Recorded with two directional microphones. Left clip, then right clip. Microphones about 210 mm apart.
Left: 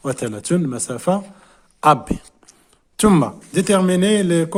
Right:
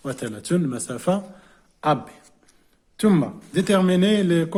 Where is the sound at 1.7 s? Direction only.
35° left (ahead or behind).